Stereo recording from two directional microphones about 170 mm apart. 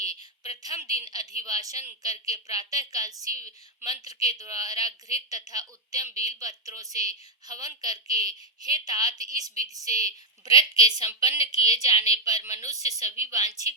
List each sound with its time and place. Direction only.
0.0 s a woman's voice: 20° right (ahead or behind)